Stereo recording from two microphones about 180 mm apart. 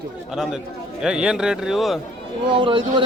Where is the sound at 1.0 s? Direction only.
5° right (ahead or behind).